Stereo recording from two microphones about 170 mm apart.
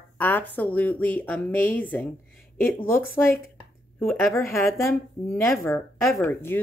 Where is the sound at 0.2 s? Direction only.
10° left (ahead or behind).